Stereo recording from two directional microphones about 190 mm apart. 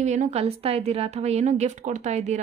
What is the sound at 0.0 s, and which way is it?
A woman's voice, 40° right (ahead or behind).